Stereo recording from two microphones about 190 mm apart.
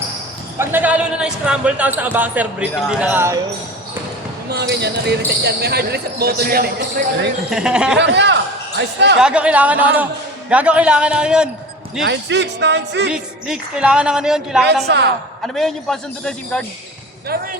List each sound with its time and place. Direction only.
0.6 s speech: 10° right (ahead or behind)
4.7 s speech: 60° right (ahead or behind)
7.5 s a woman's voice: 5° right (ahead or behind)
7.9 s a man's voice: 65° right (ahead or behind)
9.2 s a woman's voice: 5° right (ahead or behind)
12.0 s speech: 65° right (ahead or behind)
13.1 s a woman's voice: 5° right (ahead or behind)
14.8 s speech: 60° right (ahead or behind)
15.5 s a woman's voice: centre (ahead or behind)
17.2 s speech: 50° right (ahead or behind)